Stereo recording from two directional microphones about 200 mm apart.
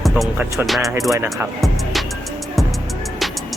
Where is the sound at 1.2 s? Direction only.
Centre (ahead or behind).